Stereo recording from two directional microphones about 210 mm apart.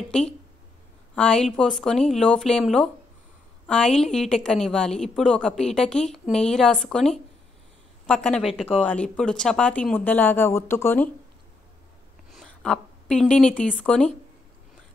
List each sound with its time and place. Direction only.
1.1 s a woman's voice: 5° left (ahead or behind)
12.3 s a woman's voice: centre (ahead or behind)